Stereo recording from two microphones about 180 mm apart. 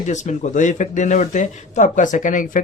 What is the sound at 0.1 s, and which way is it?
Speech, 40° left (ahead or behind).